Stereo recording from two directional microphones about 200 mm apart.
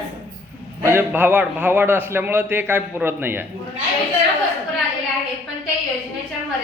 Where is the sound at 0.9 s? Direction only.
10° right (ahead or behind).